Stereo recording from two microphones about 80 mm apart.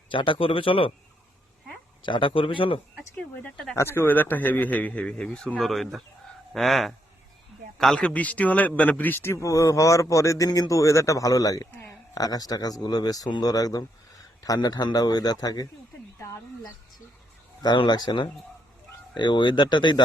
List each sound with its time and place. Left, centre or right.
0.1 s a man's voice: left
2.0 s a man's voice: left
3.8 s speech: left; by 8.1 s centre
8.1 s a man's voice: centre; by 15.6 s left
17.6 s speech: left